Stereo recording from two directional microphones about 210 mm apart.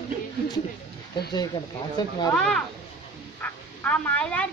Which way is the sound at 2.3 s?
5° left (ahead or behind).